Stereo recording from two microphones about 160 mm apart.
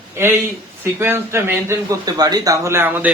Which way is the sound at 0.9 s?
15° right (ahead or behind).